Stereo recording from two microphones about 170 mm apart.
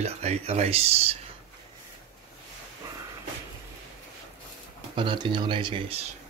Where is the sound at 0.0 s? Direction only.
40° right (ahead or behind).